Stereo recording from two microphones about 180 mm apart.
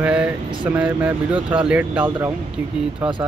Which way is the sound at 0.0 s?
5° right (ahead or behind).